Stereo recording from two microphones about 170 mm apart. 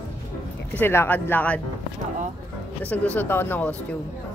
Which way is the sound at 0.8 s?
10° left (ahead or behind).